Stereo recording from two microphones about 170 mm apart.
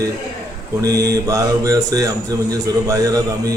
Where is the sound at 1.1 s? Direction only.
20° right (ahead or behind).